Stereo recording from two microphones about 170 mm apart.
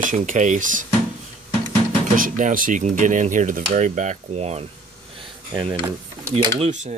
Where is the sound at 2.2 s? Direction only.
50° right (ahead or behind).